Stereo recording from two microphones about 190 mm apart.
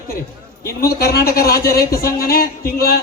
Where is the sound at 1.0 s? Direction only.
55° left (ahead or behind).